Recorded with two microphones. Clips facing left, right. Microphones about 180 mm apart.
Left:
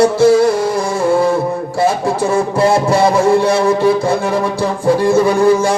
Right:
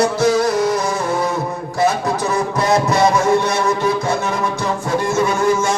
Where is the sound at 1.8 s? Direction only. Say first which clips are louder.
Left 2 dB; 30° left (ahead or behind).